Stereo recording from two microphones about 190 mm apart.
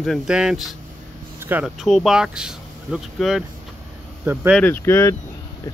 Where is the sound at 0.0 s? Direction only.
Centre (ahead or behind).